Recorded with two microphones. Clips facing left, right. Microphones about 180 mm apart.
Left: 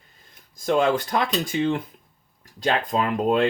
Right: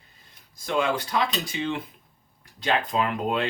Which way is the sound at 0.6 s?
45° left (ahead or behind).